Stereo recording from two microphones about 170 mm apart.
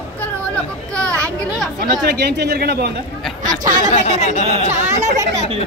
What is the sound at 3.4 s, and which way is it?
Speech, 50° right (ahead or behind).